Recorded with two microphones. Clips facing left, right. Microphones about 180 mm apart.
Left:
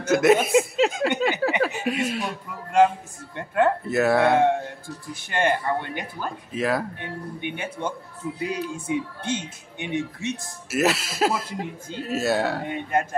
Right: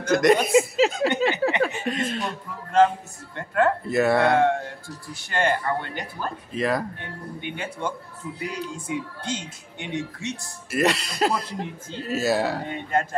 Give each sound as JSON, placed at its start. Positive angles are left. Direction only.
{"t": 0.0, "sound": "speech", "side_deg": 5}
{"t": 3.8, "sound": "speech", "side_deg": 0}
{"t": 4.3, "sound": "speech", "side_deg": 15}
{"t": 6.5, "sound": "speech", "side_deg": 5}
{"t": 7.0, "sound": "speech", "side_deg": 20}
{"t": 10.7, "sound": "speech", "side_deg": 5}
{"t": 12.6, "sound": "speech", "side_deg": 15}